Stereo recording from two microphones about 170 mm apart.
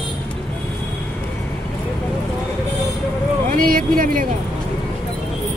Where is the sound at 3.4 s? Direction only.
55° right (ahead or behind).